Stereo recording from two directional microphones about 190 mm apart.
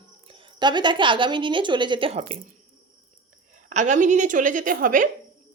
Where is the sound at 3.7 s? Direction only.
40° right (ahead or behind).